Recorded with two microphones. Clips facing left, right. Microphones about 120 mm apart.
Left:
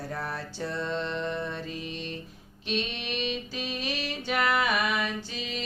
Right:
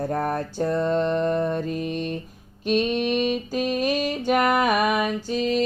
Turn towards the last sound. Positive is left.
turn(degrees=-45)  # may be behind; listen again after turning